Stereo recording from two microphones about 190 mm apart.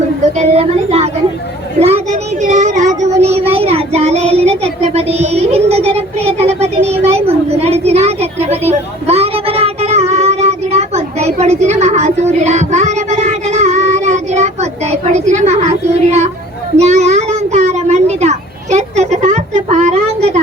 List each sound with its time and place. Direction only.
0.3 s speech: 30° right (ahead or behind)
1.8 s child singing: 35° right (ahead or behind)
7.0 s a sound: 35° right (ahead or behind)
16.7 s child singing: 35° right (ahead or behind)